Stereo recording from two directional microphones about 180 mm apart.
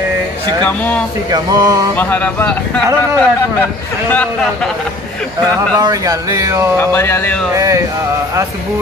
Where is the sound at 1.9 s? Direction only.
10° left (ahead or behind).